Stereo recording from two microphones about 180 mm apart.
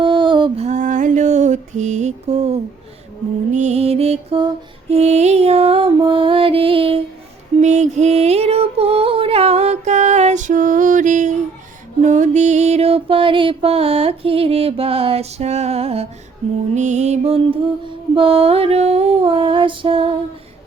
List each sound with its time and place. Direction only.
0.0 s a sound: 25° right (ahead or behind)
3.5 s music: 40° right (ahead or behind)
16.7 s mantra: 40° right (ahead or behind)